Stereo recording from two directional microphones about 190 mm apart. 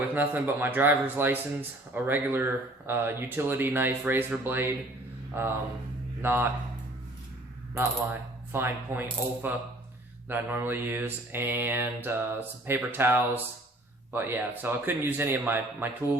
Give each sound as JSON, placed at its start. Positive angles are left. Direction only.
{"t": 0.1, "sound": "mantra", "side_deg": -10}
{"t": 5.3, "sound": "speech", "side_deg": -10}
{"t": 6.2, "sound": "mantra", "side_deg": -10}
{"t": 8.5, "sound": "mantra", "side_deg": -10}